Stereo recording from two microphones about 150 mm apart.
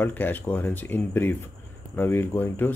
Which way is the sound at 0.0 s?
10° left (ahead or behind).